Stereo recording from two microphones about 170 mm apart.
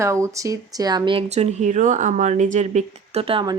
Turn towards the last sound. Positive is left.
turn(degrees=-30)  # may be behind; listen again after turning